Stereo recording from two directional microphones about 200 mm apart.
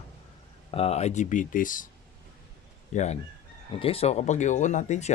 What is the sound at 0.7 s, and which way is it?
Speech, 30° left (ahead or behind).